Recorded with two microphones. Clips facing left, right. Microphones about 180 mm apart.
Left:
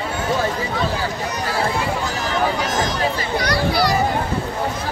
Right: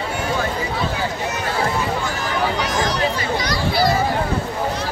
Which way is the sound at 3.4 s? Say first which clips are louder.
Left 2 dB; 65° left (ahead or behind).